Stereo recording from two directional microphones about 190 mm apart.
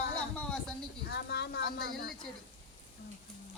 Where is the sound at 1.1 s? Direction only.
60° left (ahead or behind).